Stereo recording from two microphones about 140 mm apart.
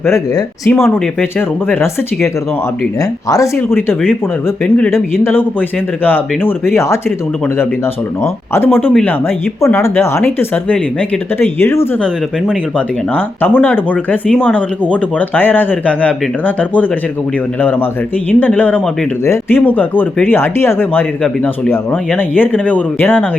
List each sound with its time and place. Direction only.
0.0 s speech: 20° left (ahead or behind)
8.2 s speech: 15° left (ahead or behind)
8.9 s speech: 5° left (ahead or behind)
9.7 s speech: 20° left (ahead or behind)
13.1 s speech: 15° left (ahead or behind)